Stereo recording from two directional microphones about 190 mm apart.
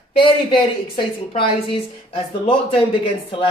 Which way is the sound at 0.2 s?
25° left (ahead or behind).